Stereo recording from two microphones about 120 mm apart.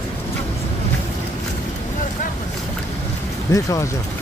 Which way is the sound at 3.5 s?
25° left (ahead or behind).